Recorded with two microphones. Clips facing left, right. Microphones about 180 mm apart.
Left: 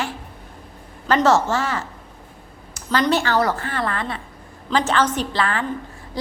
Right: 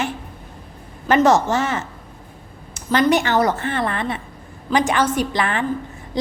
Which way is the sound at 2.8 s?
25° right (ahead or behind).